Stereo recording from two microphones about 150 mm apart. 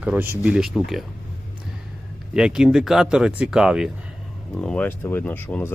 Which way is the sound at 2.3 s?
5° right (ahead or behind).